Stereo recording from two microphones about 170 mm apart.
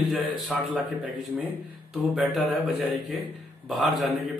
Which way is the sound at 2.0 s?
Centre (ahead or behind).